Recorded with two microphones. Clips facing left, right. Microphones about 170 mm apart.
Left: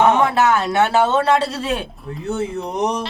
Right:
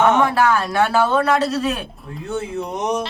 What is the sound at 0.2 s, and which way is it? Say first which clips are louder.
Speech: left 1 dB; 25° left (ahead or behind).